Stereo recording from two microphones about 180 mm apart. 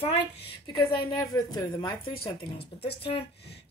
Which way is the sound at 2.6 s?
65° left (ahead or behind).